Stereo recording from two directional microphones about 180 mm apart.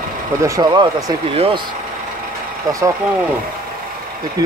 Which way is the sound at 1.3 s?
30° right (ahead or behind).